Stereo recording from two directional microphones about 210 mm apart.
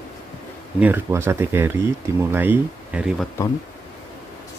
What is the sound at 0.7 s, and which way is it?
Speech, 10° right (ahead or behind).